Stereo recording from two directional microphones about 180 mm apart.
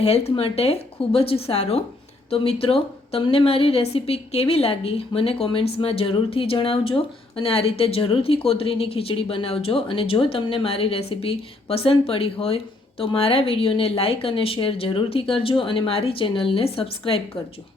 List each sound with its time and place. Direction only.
0.0 s speech: 35° left (ahead or behind)